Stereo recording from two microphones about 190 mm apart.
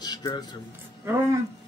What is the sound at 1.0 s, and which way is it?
Speech, 15° right (ahead or behind).